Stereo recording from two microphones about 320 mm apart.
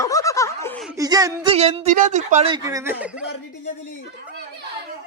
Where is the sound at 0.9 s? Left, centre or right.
Centre.